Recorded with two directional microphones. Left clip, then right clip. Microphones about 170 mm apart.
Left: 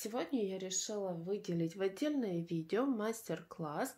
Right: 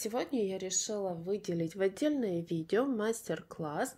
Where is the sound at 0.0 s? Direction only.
35° right (ahead or behind).